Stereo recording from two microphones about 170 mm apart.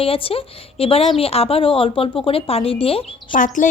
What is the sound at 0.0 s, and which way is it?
A woman's voice, 35° left (ahead or behind).